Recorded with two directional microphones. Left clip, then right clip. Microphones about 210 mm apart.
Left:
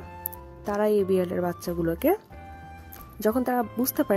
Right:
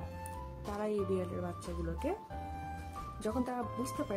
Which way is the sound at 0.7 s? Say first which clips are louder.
Left 13 dB; 40° left (ahead or behind).